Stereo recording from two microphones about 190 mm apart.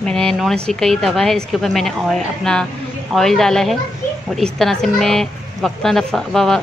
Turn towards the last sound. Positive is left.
turn(degrees=0)  # may be behind; listen again after turning